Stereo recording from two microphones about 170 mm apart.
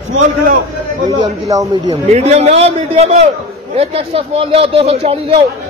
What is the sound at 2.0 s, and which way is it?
Speech, 40° right (ahead or behind).